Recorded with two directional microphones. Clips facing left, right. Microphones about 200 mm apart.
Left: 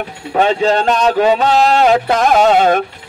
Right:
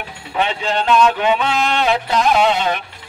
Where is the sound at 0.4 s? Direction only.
40° left (ahead or behind).